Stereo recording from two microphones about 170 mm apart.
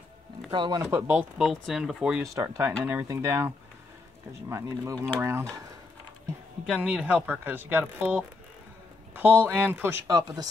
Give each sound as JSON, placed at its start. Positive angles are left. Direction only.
{"t": 0.5, "sound": "speech", "side_deg": -25}
{"t": 1.4, "sound": "speech", "side_deg": 0}
{"t": 2.3, "sound": "speech", "side_deg": -15}
{"t": 6.6, "sound": "speech", "side_deg": -5}